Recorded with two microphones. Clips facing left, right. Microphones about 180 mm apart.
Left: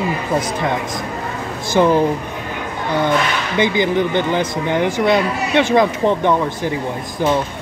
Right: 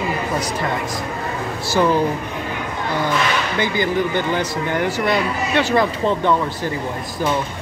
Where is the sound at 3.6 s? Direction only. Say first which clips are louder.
Left 6 dB; 20° left (ahead or behind).